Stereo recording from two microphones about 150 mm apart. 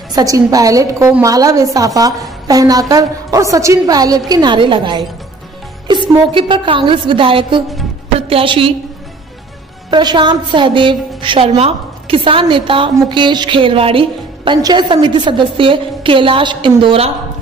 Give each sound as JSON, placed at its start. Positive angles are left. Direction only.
{"t": 0.1, "sound": "a woman's voice", "side_deg": -25}
{"t": 9.8, "sound": "a woman's voice", "side_deg": -30}